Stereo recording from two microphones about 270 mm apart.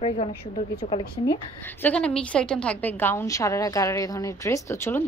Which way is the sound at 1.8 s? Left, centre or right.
Centre.